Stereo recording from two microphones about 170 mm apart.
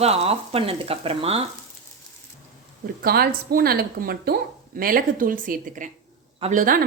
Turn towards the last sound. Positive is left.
turn(degrees=-55)  # may be behind; listen again after turning